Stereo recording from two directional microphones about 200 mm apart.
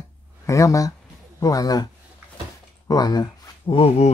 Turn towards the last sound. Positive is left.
turn(degrees=25)  # may be behind; listen again after turning